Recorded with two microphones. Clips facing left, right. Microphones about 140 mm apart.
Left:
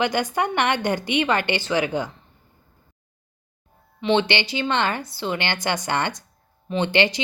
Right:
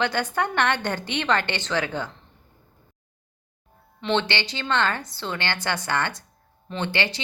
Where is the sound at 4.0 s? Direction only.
10° left (ahead or behind).